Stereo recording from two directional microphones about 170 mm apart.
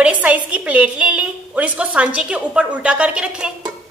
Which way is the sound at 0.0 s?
10° right (ahead or behind).